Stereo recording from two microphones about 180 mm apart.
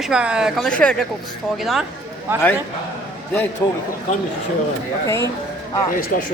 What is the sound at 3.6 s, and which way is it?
Speech, 15° left (ahead or behind).